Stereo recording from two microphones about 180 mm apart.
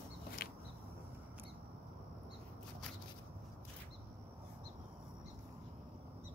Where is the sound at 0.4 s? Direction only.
55° left (ahead or behind).